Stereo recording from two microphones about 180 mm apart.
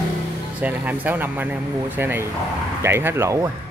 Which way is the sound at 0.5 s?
10° right (ahead or behind).